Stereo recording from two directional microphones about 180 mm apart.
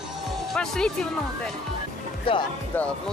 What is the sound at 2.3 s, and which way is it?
Speech, 30° left (ahead or behind).